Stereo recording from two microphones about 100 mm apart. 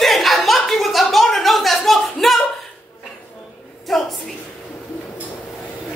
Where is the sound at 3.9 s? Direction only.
Centre (ahead or behind).